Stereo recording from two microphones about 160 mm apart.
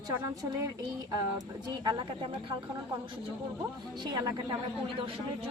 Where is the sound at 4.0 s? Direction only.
25° right (ahead or behind).